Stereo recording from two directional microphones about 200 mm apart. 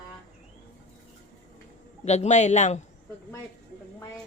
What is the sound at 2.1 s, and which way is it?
Speech, 35° left (ahead or behind).